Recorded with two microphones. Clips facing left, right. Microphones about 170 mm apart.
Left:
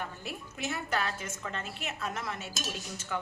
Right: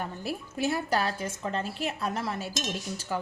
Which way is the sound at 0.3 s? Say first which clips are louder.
Right 10 dB; 35° right (ahead or behind).